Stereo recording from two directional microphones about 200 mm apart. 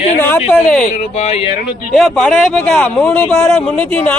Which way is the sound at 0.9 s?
35° left (ahead or behind).